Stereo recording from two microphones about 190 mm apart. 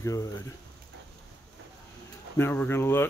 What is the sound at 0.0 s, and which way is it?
Speech, 15° left (ahead or behind).